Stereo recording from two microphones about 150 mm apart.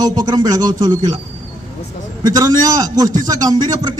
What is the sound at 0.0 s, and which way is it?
A man's voice, 25° right (ahead or behind).